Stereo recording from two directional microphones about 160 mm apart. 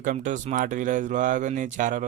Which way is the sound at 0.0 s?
55° right (ahead or behind).